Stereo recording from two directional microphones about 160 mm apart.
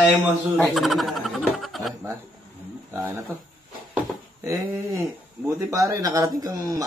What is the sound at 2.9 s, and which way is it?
Speech, 10° right (ahead or behind).